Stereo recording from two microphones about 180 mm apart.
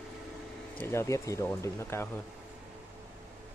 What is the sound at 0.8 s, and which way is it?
Speech, 15° left (ahead or behind).